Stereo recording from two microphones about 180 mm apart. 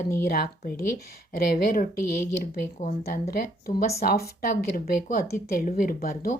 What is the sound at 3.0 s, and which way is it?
Speech, 60° left (ahead or behind).